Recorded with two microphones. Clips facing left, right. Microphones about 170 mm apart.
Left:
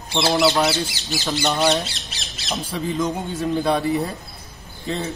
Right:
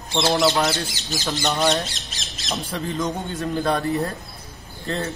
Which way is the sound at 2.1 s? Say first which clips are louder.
Even; 40° right (ahead or behind).